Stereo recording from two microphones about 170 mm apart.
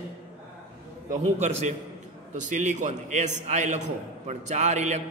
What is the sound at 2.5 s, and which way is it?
A man's voice, 45° right (ahead or behind).